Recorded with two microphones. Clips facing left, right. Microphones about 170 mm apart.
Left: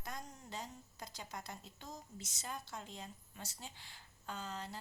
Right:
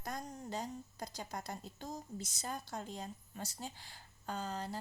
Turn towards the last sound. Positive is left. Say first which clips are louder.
# right 5 dB
turn(degrees=-40)  # may be behind; listen again after turning